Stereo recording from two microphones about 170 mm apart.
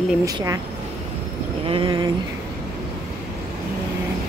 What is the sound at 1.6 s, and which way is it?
Speech, 30° right (ahead or behind).